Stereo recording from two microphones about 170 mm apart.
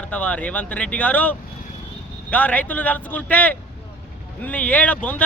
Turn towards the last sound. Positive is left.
turn(degrees=10)  # may be behind; listen again after turning